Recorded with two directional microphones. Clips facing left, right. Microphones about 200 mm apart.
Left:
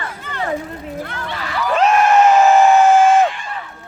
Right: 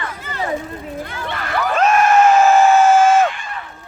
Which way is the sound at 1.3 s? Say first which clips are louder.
Right 3 dB; 55° right (ahead or behind).